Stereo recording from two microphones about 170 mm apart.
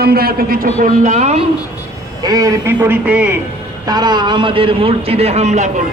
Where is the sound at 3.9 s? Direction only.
25° right (ahead or behind); by 5.6 s 40° right (ahead or behind).